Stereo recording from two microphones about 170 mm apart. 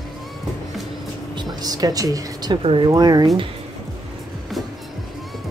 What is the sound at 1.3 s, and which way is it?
Speech, 25° right (ahead or behind).